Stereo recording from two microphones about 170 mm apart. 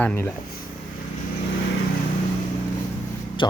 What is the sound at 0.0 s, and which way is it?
Speech, 10° left (ahead or behind).